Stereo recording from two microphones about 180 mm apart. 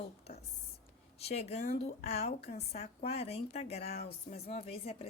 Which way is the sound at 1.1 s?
35° left (ahead or behind).